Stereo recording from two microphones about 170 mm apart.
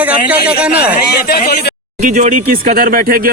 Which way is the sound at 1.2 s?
70° left (ahead or behind).